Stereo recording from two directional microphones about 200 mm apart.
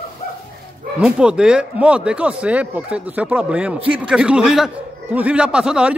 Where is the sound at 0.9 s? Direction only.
5° right (ahead or behind).